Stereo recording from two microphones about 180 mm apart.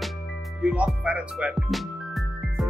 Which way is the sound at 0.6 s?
5° right (ahead or behind).